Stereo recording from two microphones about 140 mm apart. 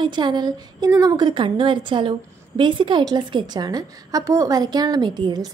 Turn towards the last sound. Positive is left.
turn(degrees=-30)  # may be behind; listen again after turning